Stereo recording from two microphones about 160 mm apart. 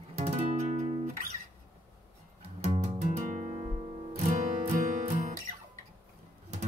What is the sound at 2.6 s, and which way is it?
Guitar, 40° right (ahead or behind).